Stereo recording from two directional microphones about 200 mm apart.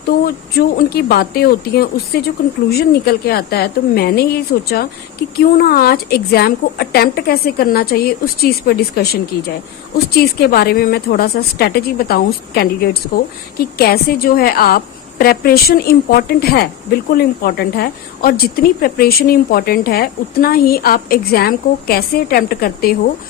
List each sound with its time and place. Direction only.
0.1 s a woman's voice: 50° left (ahead or behind)
10.2 s a woman's voice: 50° left (ahead or behind)